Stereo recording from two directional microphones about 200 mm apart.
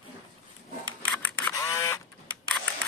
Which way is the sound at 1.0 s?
10° left (ahead or behind).